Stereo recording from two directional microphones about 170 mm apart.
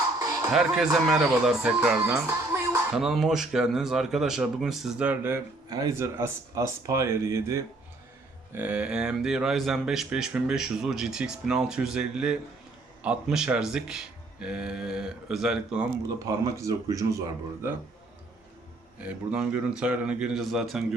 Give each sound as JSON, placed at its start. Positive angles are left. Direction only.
{"t": 0.5, "sound": "speech", "side_deg": 0}
{"t": 16.0, "sound": "speech", "side_deg": -20}
{"t": 18.9, "sound": "speech", "side_deg": -5}